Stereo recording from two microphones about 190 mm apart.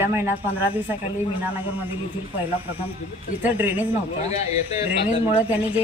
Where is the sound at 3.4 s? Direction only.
10° right (ahead or behind).